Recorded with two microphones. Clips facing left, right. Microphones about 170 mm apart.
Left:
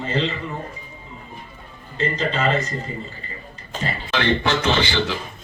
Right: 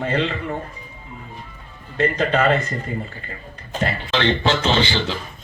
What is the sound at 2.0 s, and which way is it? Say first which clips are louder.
Speech: right 4 dB; 55° right (ahead or behind).